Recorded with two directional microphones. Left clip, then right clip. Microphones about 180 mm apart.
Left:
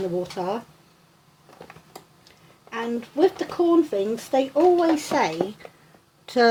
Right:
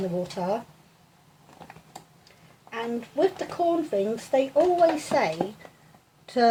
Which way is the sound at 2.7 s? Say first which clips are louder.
Left 3 dB; 35° left (ahead or behind).